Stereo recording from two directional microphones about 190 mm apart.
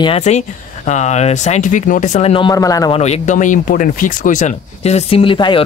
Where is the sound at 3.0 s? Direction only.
40° left (ahead or behind).